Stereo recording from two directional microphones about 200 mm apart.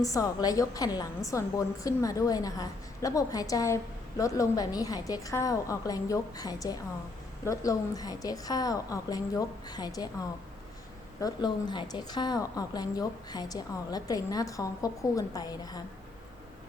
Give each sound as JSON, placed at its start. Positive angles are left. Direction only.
{"t": 0.0, "sound": "a woman's voice", "side_deg": 15}
{"t": 11.2, "sound": "a woman's voice", "side_deg": 20}